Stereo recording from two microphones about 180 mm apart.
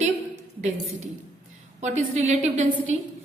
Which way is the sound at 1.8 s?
40° right (ahead or behind).